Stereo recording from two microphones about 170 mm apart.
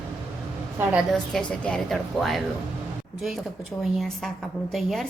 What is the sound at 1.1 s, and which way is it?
A woman's voice, 5° left (ahead or behind).